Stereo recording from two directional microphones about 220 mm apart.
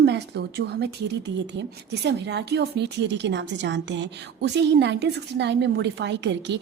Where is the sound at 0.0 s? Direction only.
50° right (ahead or behind).